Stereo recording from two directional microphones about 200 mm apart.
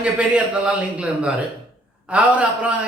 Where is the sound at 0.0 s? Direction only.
5° right (ahead or behind).